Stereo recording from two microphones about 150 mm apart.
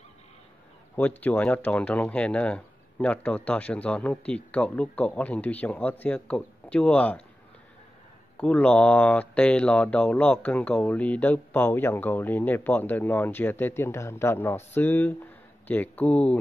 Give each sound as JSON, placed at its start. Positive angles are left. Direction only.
{"t": 0.9, "sound": "speech", "side_deg": 10}
{"t": 8.4, "sound": "speech", "side_deg": 10}